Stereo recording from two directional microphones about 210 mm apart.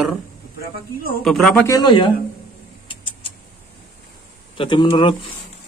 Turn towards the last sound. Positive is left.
turn(degrees=20)  # may be behind; listen again after turning